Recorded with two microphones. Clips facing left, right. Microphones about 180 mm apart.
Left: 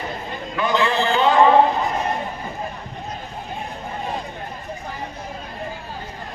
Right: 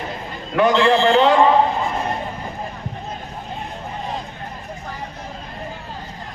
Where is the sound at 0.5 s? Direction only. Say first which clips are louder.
Right 6 dB; 65° right (ahead or behind).